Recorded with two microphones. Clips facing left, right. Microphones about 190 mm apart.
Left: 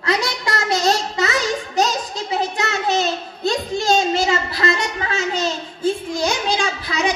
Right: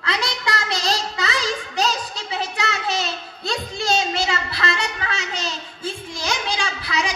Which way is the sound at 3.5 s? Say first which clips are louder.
Left 5 dB; 40° left (ahead or behind).